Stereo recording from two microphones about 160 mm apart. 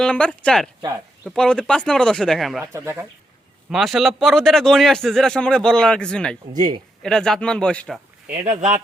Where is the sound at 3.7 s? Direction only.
Centre (ahead or behind).